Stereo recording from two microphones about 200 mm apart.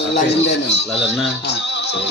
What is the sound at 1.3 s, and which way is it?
Music, 55° left (ahead or behind).